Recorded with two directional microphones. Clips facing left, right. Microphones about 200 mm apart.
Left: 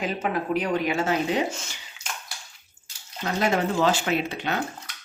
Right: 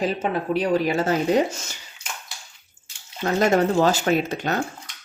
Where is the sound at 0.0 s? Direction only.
30° right (ahead or behind).